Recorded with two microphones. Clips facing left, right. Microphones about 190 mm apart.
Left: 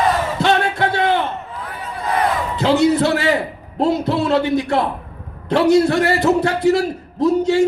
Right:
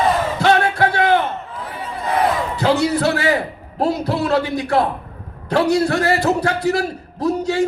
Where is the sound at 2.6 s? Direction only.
20° left (ahead or behind).